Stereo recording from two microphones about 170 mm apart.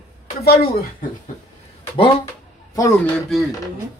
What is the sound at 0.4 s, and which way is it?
Speech, 65° left (ahead or behind).